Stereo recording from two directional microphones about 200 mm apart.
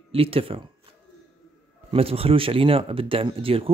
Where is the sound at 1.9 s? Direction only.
30° right (ahead or behind).